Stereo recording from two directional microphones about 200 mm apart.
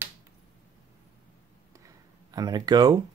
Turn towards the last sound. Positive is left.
turn(degrees=-20)  # may be behind; listen again after turning